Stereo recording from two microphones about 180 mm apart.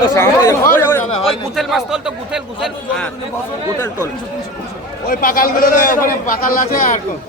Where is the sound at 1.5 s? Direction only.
Centre (ahead or behind).